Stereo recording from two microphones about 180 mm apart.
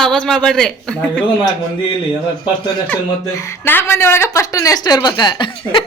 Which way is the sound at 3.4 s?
15° left (ahead or behind).